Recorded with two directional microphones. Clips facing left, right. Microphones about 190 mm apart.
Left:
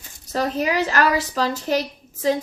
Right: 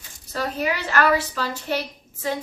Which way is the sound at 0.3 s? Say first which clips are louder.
Left 4 dB; 40° left (ahead or behind).